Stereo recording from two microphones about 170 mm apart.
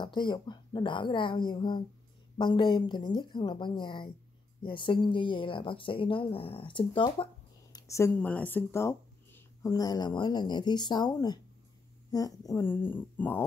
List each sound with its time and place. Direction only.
0.0 s speech: 25° left (ahead or behind)
7.7 s speech: 15° left (ahead or behind)